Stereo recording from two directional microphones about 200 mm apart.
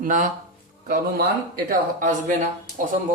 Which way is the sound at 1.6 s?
40° right (ahead or behind).